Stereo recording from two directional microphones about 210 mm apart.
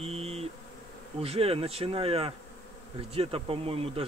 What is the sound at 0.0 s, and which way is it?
Bee, 30° right (ahead or behind).